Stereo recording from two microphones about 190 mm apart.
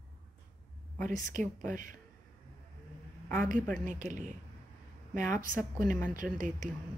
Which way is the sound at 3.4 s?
45° right (ahead or behind).